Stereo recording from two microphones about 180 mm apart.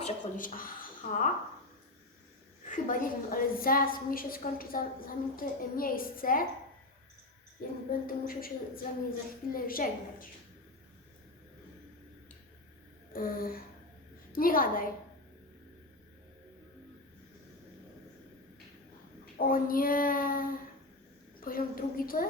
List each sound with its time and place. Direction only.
0.0 s speech: 50° left (ahead or behind)
2.6 s a woman's voice: 45° left (ahead or behind)
7.9 s a woman's voice: 55° left (ahead or behind)
13.1 s a woman's voice: 55° left (ahead or behind)
19.5 s a woman's voice: 50° left (ahead or behind)